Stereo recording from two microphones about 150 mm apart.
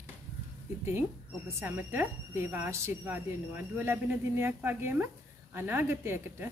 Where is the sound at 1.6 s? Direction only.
15° right (ahead or behind).